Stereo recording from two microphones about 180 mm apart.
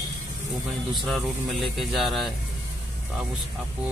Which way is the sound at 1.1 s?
Centre (ahead or behind).